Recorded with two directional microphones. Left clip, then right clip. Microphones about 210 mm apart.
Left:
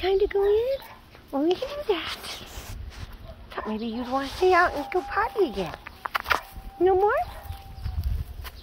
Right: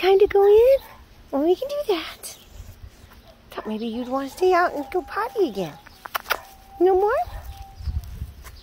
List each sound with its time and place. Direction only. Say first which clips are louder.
0.0 s speech: right 7 dB; 75° right (ahead or behind)
1.3 s a child's voice: right 4 dB; 60° right (ahead or behind)
3.5 s speech: right 2 dB; 40° right (ahead or behind)
6.8 s speech: right 2 dB; 40° right (ahead or behind)